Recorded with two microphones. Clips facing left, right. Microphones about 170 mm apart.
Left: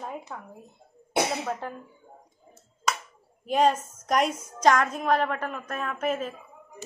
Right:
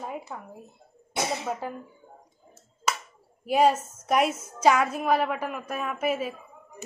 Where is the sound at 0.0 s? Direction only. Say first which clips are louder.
Right 1 dB; 5° right (ahead or behind).